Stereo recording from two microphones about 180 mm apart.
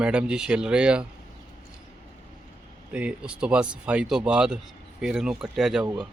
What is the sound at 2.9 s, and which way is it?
Speech, 5° right (ahead or behind).